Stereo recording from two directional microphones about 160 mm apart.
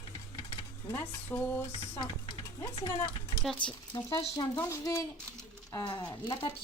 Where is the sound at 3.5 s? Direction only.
30° left (ahead or behind).